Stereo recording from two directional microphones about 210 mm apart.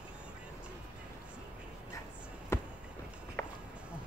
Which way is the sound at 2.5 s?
10° left (ahead or behind).